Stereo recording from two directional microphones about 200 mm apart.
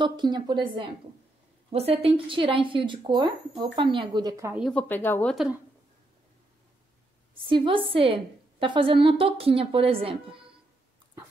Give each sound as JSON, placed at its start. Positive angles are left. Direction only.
{"t": 0.0, "sound": "a woman's voice", "side_deg": -20}
{"t": 4.6, "sound": "speech", "side_deg": 5}
{"t": 5.3, "sound": "speech", "side_deg": 0}
{"t": 7.3, "sound": "a woman's voice", "side_deg": -25}